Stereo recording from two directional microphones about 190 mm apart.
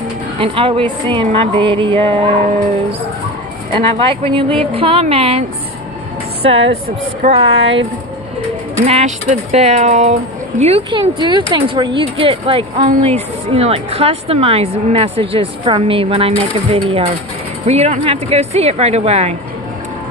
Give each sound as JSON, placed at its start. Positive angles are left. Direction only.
{"t": 0.4, "sound": "speech", "side_deg": -30}
{"t": 3.7, "sound": "speech", "side_deg": -25}
{"t": 6.4, "sound": "speech", "side_deg": -30}
{"t": 8.8, "sound": "speech", "side_deg": -35}